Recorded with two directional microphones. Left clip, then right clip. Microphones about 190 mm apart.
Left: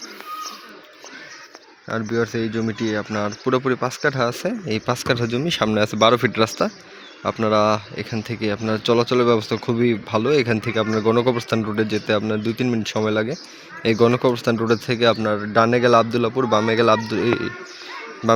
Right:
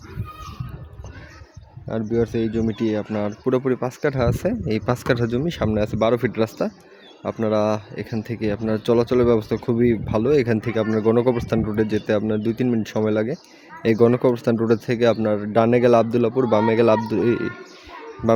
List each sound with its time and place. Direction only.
1.9 s speech: 25° right (ahead or behind)
5.4 s speech: 15° right (ahead or behind)